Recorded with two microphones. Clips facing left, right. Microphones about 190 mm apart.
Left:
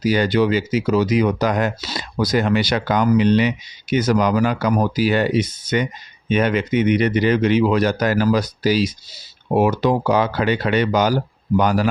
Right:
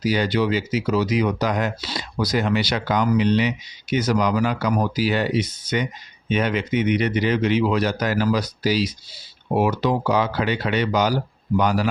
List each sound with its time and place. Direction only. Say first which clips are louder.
0.0 s speech: left 4 dB; 50° left (ahead or behind)